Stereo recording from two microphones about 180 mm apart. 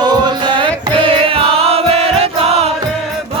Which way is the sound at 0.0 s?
25° right (ahead or behind).